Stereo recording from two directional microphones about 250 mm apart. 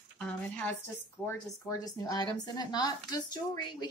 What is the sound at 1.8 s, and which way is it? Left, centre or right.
Speech, centre.